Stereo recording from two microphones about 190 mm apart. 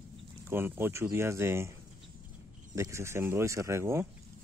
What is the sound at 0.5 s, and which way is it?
Speech, 10° right (ahead or behind).